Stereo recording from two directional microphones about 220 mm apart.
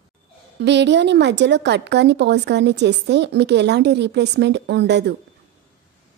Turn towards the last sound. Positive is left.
turn(degrees=-50)  # may be behind; listen again after turning